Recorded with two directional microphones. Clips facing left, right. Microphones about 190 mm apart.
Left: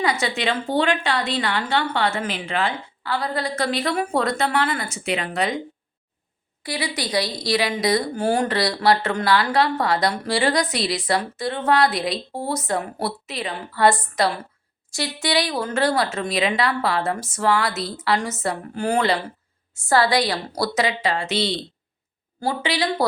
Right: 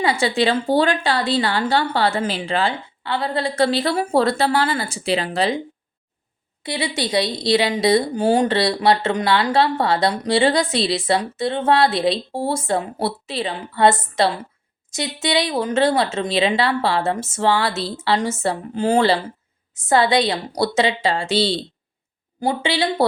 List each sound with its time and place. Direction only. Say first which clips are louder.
0.0 s a woman's voice: right 4 dB; 30° right (ahead or behind)
6.6 s a woman's voice: right 3 dB; 25° right (ahead or behind)